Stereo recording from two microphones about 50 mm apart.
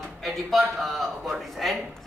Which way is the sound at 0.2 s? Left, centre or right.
Centre.